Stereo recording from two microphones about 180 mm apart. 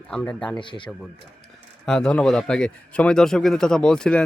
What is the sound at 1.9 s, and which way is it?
A man's voice, 5° left (ahead or behind).